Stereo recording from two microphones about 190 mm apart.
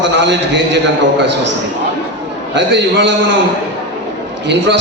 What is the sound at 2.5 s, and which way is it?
Speech, 70° right (ahead or behind).